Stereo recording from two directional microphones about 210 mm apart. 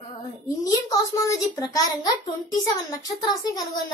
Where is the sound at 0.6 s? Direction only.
15° left (ahead or behind).